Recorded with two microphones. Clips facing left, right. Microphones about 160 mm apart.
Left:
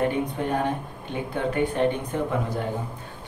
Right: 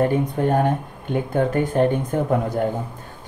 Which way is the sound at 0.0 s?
45° right (ahead or behind).